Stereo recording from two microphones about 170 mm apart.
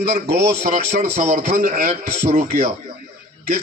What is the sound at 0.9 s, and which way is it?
A man's voice, 50° right (ahead or behind).